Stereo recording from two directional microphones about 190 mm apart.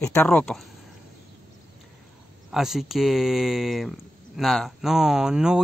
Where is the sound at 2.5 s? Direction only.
Centre (ahead or behind).